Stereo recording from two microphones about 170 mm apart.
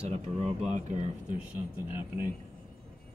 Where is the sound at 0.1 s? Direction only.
40° right (ahead or behind).